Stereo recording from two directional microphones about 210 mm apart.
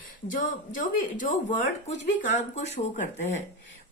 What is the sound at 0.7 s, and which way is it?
A woman's voice, 40° left (ahead or behind).